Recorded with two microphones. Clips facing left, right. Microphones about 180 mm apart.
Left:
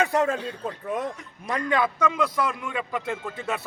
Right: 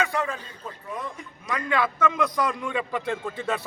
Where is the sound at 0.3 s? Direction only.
65° left (ahead or behind).